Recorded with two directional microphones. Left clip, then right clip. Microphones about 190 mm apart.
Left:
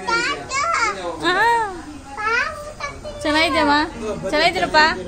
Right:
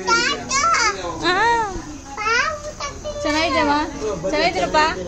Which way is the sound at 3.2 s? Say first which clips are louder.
Left 2 dB; 15° left (ahead or behind).